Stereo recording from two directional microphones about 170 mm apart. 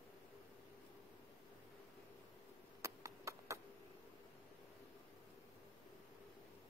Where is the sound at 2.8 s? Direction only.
15° right (ahead or behind).